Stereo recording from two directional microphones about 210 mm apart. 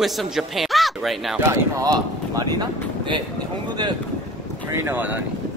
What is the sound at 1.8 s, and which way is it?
Speech, 20° right (ahead or behind).